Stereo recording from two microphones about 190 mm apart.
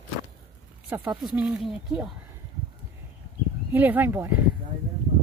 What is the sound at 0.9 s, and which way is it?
Speech, 10° right (ahead or behind).